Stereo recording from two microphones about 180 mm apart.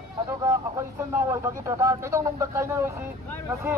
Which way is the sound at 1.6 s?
15° right (ahead or behind).